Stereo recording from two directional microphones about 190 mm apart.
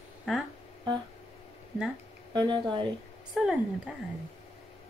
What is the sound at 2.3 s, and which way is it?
Speech, 25° right (ahead or behind).